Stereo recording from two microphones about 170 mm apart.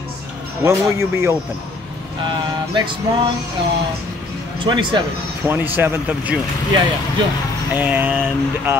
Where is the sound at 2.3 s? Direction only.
25° right (ahead or behind).